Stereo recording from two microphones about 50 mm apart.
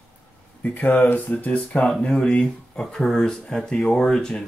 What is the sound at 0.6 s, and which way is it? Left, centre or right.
Speech, left.